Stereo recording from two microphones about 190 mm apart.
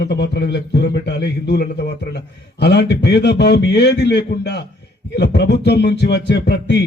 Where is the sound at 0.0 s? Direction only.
65° left (ahead or behind).